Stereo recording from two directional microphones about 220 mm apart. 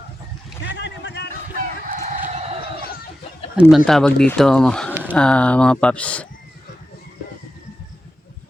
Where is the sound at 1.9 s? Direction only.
35° right (ahead or behind).